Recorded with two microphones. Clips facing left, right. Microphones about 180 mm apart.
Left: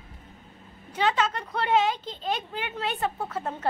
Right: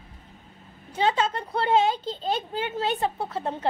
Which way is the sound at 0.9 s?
30° right (ahead or behind).